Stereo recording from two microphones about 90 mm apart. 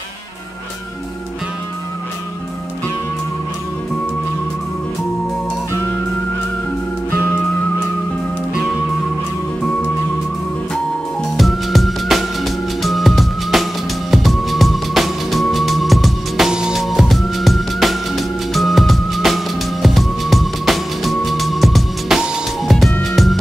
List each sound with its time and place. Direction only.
7.1 s music: 25° left (ahead or behind)
11.3 s music: centre (ahead or behind)